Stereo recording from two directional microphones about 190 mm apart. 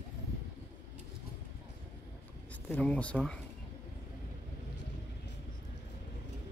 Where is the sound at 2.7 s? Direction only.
5° left (ahead or behind).